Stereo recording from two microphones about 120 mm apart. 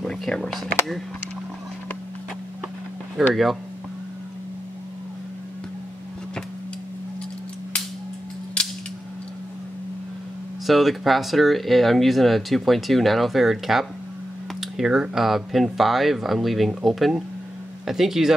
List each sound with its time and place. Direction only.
0.0 s speech: 5° left (ahead or behind)
3.2 s speech: centre (ahead or behind)
8.6 s scissors: 10° left (ahead or behind)
10.7 s speech: centre (ahead or behind)